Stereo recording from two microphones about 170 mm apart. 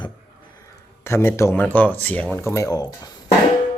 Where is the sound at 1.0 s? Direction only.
15° left (ahead or behind).